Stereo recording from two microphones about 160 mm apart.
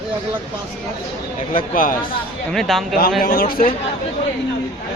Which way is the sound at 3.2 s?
65° left (ahead or behind).